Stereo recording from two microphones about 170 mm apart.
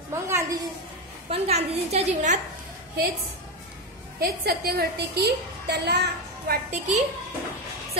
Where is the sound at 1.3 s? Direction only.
40° right (ahead or behind).